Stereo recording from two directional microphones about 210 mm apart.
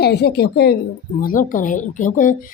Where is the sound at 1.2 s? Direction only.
40° left (ahead or behind).